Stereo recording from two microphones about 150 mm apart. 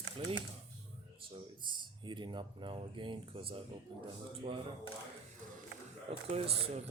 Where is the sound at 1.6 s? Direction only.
30° right (ahead or behind).